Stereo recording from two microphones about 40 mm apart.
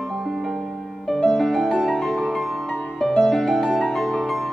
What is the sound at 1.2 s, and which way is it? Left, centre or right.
Music, centre.